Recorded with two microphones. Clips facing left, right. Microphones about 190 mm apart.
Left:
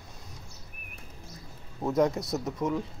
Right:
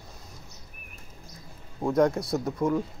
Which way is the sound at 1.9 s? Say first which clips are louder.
Right 3 dB; centre (ahead or behind).